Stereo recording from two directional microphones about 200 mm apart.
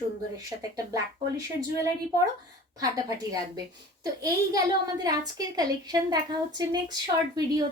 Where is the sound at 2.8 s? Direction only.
20° right (ahead or behind).